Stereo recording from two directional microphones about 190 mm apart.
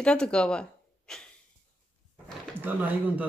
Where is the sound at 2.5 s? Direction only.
10° right (ahead or behind).